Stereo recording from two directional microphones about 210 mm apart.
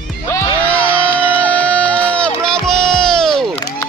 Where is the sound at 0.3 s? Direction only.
5° left (ahead or behind).